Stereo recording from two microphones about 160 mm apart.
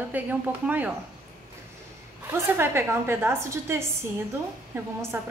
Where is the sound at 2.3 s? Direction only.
15° right (ahead or behind).